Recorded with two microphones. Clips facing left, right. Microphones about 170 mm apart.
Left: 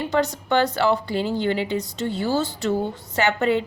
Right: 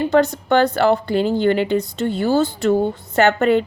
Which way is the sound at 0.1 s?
55° right (ahead or behind).